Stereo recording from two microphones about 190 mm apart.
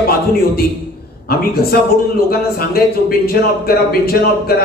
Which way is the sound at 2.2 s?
55° left (ahead or behind).